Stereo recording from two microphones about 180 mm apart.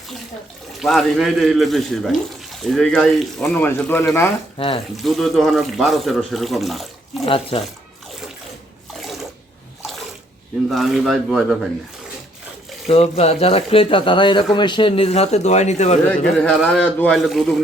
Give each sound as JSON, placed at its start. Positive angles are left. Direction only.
{"t": 0.8, "sound": "speech", "side_deg": 0}
{"t": 4.5, "sound": "speech", "side_deg": 30}
{"t": 4.9, "sound": "speech", "side_deg": 0}
{"t": 7.3, "sound": "speech", "side_deg": 30}
{"t": 9.0, "sound": "bathtub", "side_deg": 0}
{"t": 10.7, "sound": "speech", "side_deg": 0}
{"t": 12.9, "sound": "speech", "side_deg": 35}
{"t": 16.0, "sound": "speech", "side_deg": 5}